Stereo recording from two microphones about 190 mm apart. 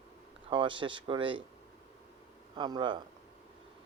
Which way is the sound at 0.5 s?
25° right (ahead or behind).